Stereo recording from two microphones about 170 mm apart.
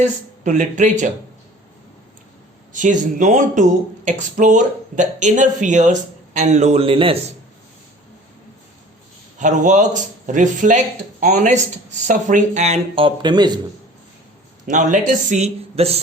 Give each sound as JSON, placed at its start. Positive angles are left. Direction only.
{"t": 0.0, "sound": "speech", "side_deg": -45}
{"t": 2.7, "sound": "speech", "side_deg": -45}
{"t": 9.4, "sound": "speech", "side_deg": -45}
{"t": 14.7, "sound": "speech", "side_deg": -45}